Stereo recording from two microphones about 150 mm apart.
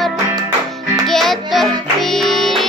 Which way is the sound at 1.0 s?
Centre (ahead or behind).